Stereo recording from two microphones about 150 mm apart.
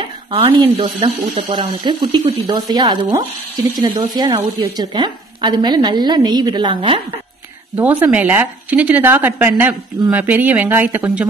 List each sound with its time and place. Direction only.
0.3 s a woman's voice: 35° right (ahead or behind)
7.7 s a woman's voice: 10° right (ahead or behind)